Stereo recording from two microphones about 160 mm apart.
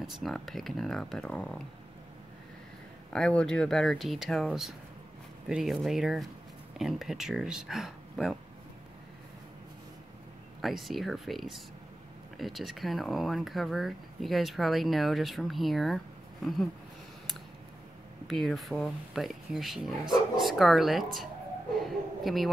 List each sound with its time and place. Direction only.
0.0 s speech: centre (ahead or behind)
3.1 s speech: 5° left (ahead or behind)
10.6 s speech: centre (ahead or behind)
18.2 s a woman's voice: centre (ahead or behind)